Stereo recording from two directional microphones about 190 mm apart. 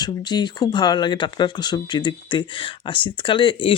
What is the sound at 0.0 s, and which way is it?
Speech, 20° left (ahead or behind).